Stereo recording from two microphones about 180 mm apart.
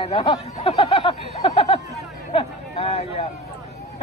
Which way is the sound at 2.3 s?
35° left (ahead or behind).